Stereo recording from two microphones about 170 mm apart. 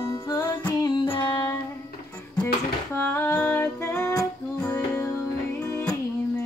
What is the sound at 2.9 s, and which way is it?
Music, 15° left (ahead or behind).